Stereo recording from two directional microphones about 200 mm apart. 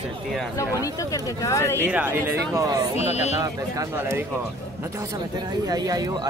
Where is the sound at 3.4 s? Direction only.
15° right (ahead or behind).